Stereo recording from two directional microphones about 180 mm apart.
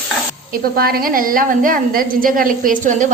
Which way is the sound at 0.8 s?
55° right (ahead or behind).